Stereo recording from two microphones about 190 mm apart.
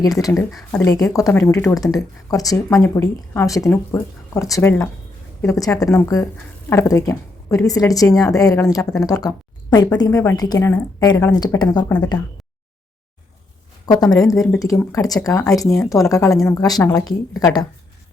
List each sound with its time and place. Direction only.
0.0 s a woman's voice: 20° left (ahead or behind)
13.8 s a woman's voice: 20° left (ahead or behind)